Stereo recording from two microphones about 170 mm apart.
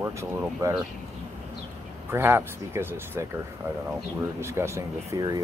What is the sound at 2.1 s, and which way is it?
Speech, 15° right (ahead or behind).